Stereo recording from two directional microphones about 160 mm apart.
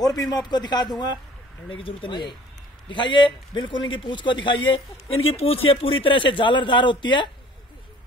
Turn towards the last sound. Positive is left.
turn(degrees=30)  # may be behind; listen again after turning